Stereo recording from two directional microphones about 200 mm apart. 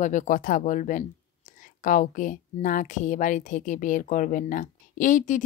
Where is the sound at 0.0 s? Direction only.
40° left (ahead or behind).